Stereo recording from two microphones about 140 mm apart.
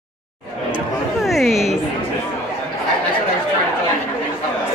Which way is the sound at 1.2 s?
Centre (ahead or behind).